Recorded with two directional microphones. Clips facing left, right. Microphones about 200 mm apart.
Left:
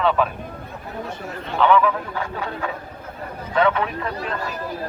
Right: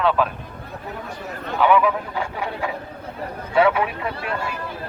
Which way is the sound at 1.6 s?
10° right (ahead or behind).